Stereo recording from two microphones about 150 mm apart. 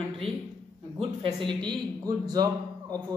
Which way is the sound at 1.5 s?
30° right (ahead or behind).